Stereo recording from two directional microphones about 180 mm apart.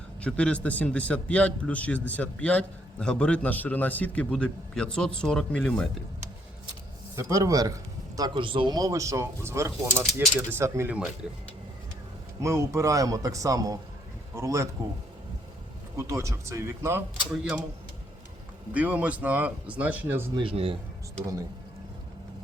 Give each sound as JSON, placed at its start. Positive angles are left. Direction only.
{"t": 0.2, "sound": "a man's voice", "side_deg": 5}
{"t": 7.2, "sound": "a man's voice", "side_deg": -15}
{"t": 12.4, "sound": "a man's voice", "side_deg": -15}
{"t": 16.0, "sound": "a man's voice", "side_deg": -15}
{"t": 18.7, "sound": "a man's voice", "side_deg": -10}
{"t": 20.3, "sound": "speech", "side_deg": -30}